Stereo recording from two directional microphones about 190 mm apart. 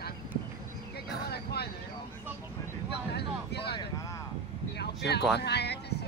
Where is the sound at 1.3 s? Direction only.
60° left (ahead or behind).